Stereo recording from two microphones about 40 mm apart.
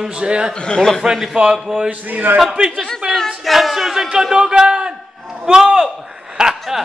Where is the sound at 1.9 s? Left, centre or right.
Right.